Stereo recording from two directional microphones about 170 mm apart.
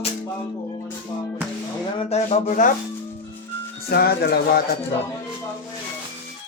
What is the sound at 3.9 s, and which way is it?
Speech, 65° left (ahead or behind).